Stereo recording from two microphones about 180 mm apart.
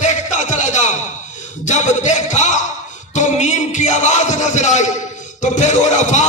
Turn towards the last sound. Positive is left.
turn(degrees=40)  # may be behind; listen again after turning